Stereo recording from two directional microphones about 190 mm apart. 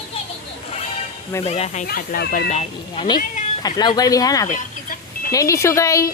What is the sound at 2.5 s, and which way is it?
Speech, 30° left (ahead or behind).